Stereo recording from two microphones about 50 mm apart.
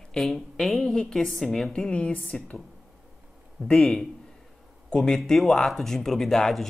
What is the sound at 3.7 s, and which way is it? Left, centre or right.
Speech, centre.